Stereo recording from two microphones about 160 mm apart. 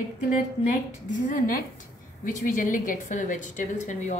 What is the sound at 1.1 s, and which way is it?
A woman's voice, 55° left (ahead or behind).